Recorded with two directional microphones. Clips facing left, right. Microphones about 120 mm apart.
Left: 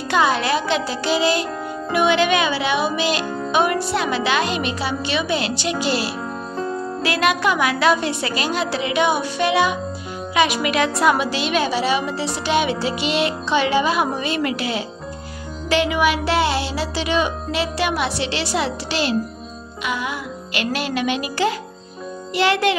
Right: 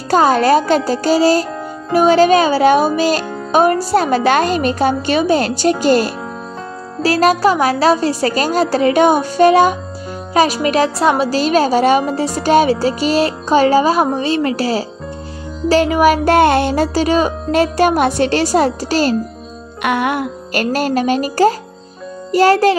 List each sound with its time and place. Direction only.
0.1 s a child's voice: 40° right (ahead or behind)
19.8 s music: 60° right (ahead or behind)
20.5 s a woman's voice: 45° right (ahead or behind)